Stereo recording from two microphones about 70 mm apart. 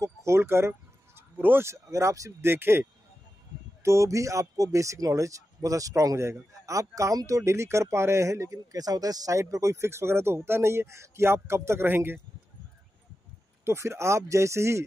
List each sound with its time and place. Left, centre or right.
0.0 s speech: right
2.5 s speech: right
3.8 s speech: right
13.7 s speech: right